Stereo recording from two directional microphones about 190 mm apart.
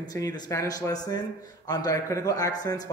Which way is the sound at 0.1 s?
20° left (ahead or behind).